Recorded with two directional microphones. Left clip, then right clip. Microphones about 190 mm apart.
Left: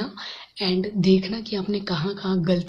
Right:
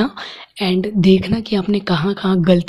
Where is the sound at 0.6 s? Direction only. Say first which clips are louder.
Right 6 dB; 45° right (ahead or behind).